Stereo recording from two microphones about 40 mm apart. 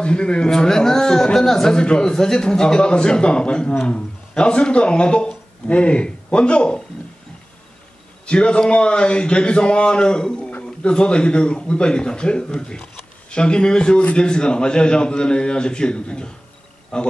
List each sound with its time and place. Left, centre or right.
0.0 s a man's voice: left
8.3 s speech: left